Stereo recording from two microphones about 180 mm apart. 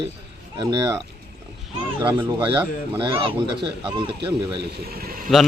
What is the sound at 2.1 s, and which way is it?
Speech, 20° right (ahead or behind).